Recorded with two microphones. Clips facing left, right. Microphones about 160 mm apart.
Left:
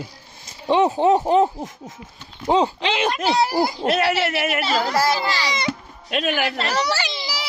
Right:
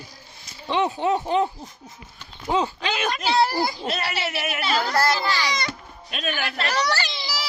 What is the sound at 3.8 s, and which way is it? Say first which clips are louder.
Speech: left 8 dB; 90° left.